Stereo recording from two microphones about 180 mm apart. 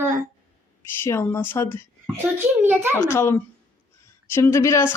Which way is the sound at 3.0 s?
15° left (ahead or behind).